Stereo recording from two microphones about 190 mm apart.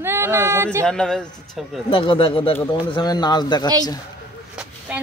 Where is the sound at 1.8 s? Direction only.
30° left (ahead or behind).